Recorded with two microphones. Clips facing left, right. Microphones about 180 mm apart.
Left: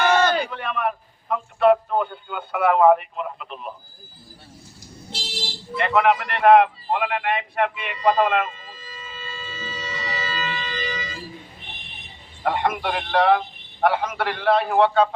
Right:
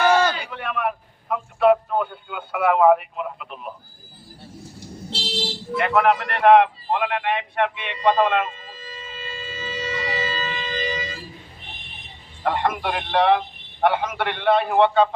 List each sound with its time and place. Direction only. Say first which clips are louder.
0.1 s a sound: even; 10° right (ahead or behind)
5.7 s a man's voice: even; 5° right (ahead or behind)
9.5 s siren: right 6 dB; 40° right (ahead or behind)
12.4 s a man's voice: even; 10° left (ahead or behind)